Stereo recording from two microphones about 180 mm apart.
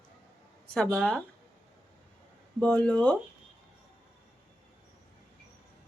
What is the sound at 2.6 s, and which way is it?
Speech, 10° left (ahead or behind).